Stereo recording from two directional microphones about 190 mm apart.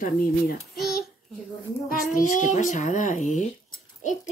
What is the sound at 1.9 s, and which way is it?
A child's voice, 45° left (ahead or behind).